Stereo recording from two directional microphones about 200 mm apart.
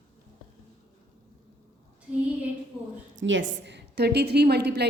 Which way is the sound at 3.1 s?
70° right (ahead or behind).